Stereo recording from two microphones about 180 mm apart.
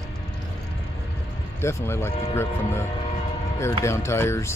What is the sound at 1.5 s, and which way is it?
Speech, 15° left (ahead or behind).